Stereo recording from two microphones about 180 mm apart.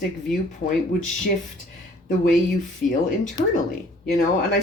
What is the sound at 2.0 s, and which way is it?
Speech, 45° left (ahead or behind).